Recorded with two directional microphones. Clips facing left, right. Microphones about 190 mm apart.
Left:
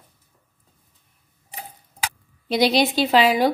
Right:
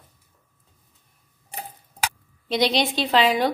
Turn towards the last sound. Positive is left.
turn(degrees=5)  # may be behind; listen again after turning